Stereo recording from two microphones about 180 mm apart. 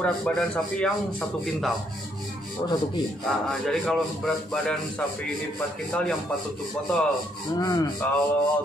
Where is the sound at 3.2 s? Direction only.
5° left (ahead or behind).